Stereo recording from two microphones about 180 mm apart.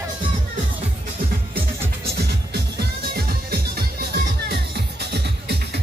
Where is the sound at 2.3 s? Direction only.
60° right (ahead or behind).